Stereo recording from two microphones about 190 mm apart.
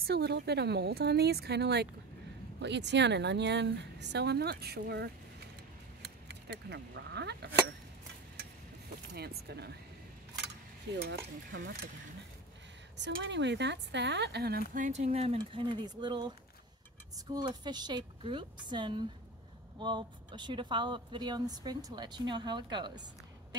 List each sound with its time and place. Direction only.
0.0 s a woman's voice: 60° right (ahead or behind)
9.1 s a woman's voice: 60° right (ahead or behind)
11.0 s a woman's voice: 75° right (ahead or behind)
12.9 s a woman's voice: 70° right (ahead or behind)
14.7 s speech: 40° right (ahead or behind); by 23.0 s 25° right (ahead or behind)